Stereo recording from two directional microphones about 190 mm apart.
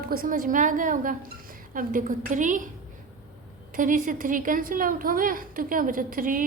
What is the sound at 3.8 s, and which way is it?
A woman's voice, 45° right (ahead or behind).